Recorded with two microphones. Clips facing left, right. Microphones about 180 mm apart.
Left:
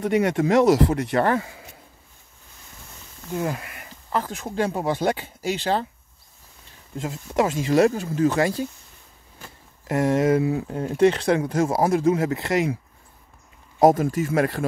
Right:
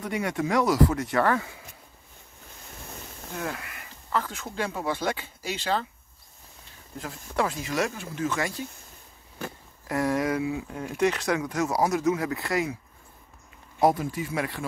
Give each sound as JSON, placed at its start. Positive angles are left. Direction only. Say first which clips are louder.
{"t": 0.5, "sound": "speech", "louder": "left 4 dB", "side_deg": 30}
{"t": 3.3, "sound": "speech", "louder": "left 7 dB", "side_deg": 20}
{"t": 4.4, "sound": "speech", "louder": "left 6 dB", "side_deg": 35}
{"t": 7.0, "sound": "speech", "louder": "left 5 dB", "side_deg": 20}
{"t": 9.8, "sound": "speech", "louder": "left 6 dB", "side_deg": 20}
{"t": 10.4, "sound": "speech", "louder": "left 6 dB", "side_deg": 40}
{"t": 13.7, "sound": "speech", "louder": "left 6 dB", "side_deg": 45}